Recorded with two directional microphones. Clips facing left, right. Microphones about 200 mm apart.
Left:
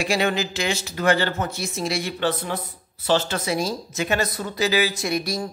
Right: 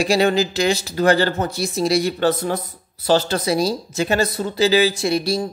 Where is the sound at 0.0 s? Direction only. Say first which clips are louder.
Right 6 dB; 35° right (ahead or behind).